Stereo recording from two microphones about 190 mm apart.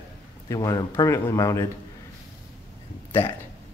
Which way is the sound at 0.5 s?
20° left (ahead or behind).